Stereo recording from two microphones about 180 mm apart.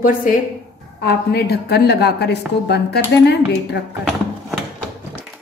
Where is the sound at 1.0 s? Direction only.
65° left (ahead or behind).